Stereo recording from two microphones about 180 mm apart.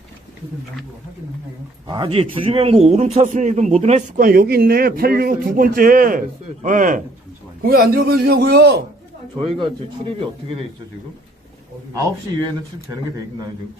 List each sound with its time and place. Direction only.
1.9 s a man's voice: 30° right (ahead or behind)
4.2 s speech: 55° right (ahead or behind)
7.6 s a man's voice: 55° right (ahead or behind)
9.4 s a man's voice: 30° right (ahead or behind)